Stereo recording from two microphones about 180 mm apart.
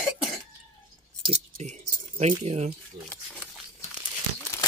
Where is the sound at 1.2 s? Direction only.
35° right (ahead or behind).